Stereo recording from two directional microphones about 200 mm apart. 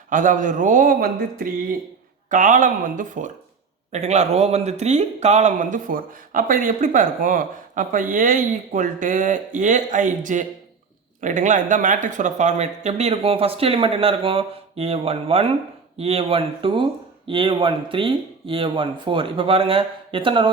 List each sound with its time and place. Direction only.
0.1 s speech: 40° right (ahead or behind); by 20.5 s 25° right (ahead or behind)